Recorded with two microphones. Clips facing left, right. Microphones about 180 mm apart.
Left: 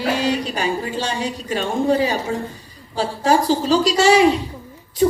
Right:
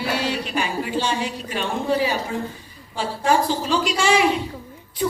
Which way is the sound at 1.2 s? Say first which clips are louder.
Left 3 dB; 40° left (ahead or behind).